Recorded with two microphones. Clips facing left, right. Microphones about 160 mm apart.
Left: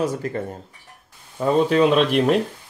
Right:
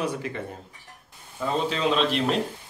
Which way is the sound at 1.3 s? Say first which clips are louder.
Left 9 dB; 55° left (ahead or behind).